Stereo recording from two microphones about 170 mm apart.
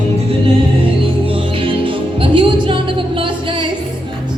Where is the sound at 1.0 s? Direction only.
30° right (ahead or behind).